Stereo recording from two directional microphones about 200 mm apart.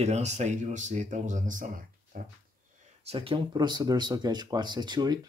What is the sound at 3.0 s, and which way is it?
Speech, 25° right (ahead or behind).